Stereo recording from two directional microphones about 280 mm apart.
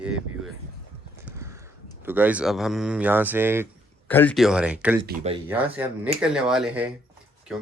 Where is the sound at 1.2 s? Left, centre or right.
Centre.